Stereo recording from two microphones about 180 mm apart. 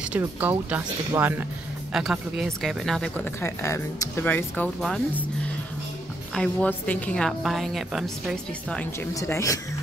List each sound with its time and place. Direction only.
0.2 s a woman's voice: 10° right (ahead or behind); by 5.2 s 5° left (ahead or behind)
6.3 s a woman's voice: 5° left (ahead or behind)
9.1 s a woman's voice: 20° left (ahead or behind)